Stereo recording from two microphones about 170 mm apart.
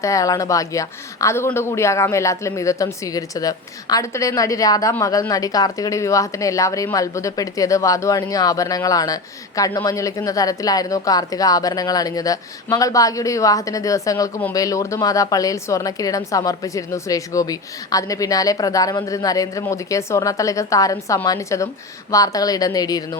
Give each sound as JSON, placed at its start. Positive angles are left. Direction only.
{"t": 0.0, "sound": "a woman's voice", "side_deg": 20}